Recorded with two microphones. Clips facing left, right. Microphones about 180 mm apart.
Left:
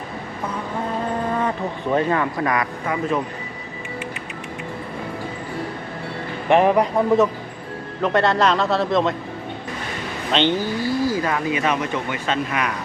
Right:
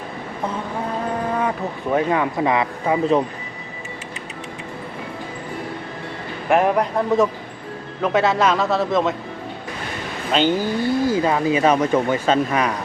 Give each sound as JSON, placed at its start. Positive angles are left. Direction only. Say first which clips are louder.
{"t": 1.4, "sound": "speech", "louder": "even", "side_deg": -10}
{"t": 6.5, "sound": "a man's voice", "louder": "left 2 dB", "side_deg": 0}
{"t": 10.3, "sound": "speech", "louder": "right 1 dB", "side_deg": -5}
{"t": 10.8, "sound": "speech", "louder": "right 3 dB", "side_deg": -25}